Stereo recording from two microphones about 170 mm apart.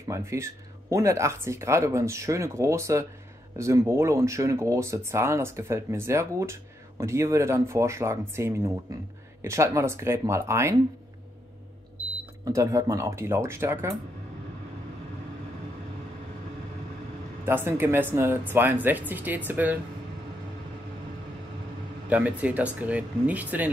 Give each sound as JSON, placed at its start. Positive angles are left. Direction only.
{"t": 0.1, "sound": "speech", "side_deg": -15}
{"t": 12.5, "sound": "speech", "side_deg": -20}
{"t": 17.5, "sound": "speech", "side_deg": -15}
{"t": 22.1, "sound": "speech", "side_deg": -10}